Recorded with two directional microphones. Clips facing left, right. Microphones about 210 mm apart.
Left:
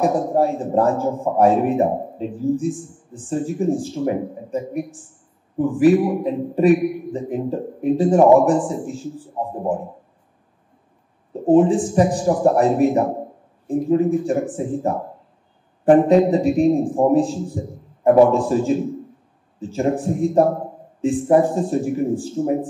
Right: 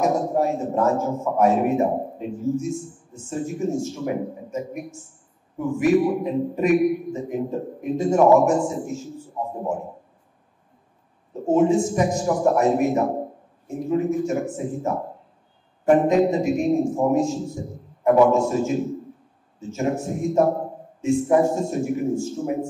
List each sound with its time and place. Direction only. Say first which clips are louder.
0.0 s a man's voice: left 3 dB; 35° left (ahead or behind)
11.4 s a man's voice: left 4 dB; 35° left (ahead or behind)